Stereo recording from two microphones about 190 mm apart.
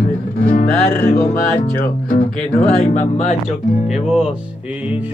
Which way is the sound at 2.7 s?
40° left (ahead or behind).